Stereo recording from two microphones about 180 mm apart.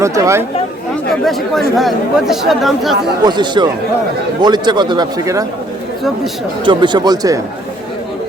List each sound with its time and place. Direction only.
0.0 s speech: 15° right (ahead or behind)
1.1 s speech: centre (ahead or behind)
3.2 s speech: 25° right (ahead or behind)
6.7 s speech: 25° right (ahead or behind)